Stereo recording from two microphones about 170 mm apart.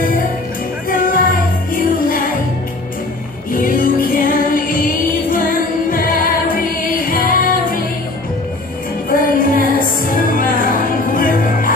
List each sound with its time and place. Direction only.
0.8 s music: 55° left (ahead or behind)
3.5 s music: 55° left (ahead or behind)
9.1 s music: 55° left (ahead or behind)